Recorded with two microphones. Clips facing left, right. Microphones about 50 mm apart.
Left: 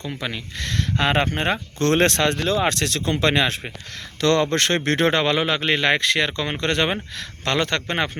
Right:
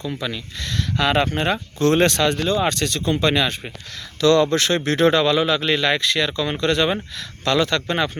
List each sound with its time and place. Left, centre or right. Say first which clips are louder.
0.1 s speech: right 2 dB; left
1.8 s speech: right 2 dB; left